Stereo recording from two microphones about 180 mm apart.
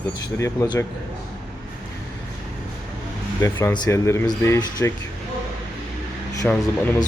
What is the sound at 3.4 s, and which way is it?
Speech, 15° left (ahead or behind).